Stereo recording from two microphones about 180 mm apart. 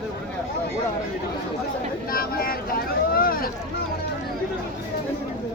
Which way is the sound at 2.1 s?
55° left (ahead or behind).